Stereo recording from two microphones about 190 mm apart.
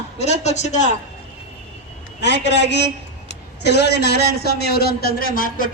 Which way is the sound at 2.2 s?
65° left (ahead or behind).